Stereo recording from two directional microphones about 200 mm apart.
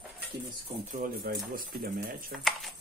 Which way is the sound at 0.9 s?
45° right (ahead or behind).